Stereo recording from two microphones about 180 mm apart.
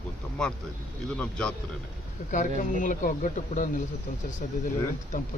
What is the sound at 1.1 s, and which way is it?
Speech, 5° left (ahead or behind).